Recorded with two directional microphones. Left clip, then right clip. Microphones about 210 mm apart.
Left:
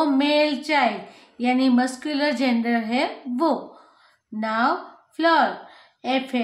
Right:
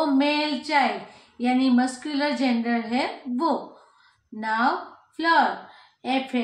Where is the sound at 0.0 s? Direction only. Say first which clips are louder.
Left 3 dB; 40° left (ahead or behind).